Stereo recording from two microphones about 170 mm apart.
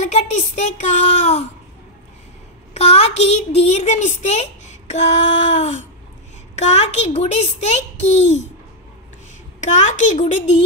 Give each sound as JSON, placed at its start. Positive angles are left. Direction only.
{"t": 0.0, "sound": "a woman's voice", "side_deg": 40}
{"t": 2.7, "sound": "a child's voice", "side_deg": 40}
{"t": 9.6, "sound": "a woman's voice", "side_deg": 45}